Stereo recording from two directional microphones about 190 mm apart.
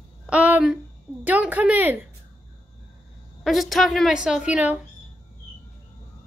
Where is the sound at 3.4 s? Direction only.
Centre (ahead or behind).